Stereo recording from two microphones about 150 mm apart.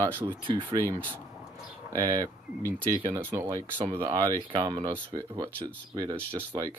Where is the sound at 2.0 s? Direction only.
20° right (ahead or behind).